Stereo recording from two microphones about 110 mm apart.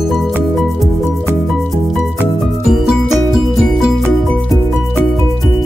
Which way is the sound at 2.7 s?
5° right (ahead or behind).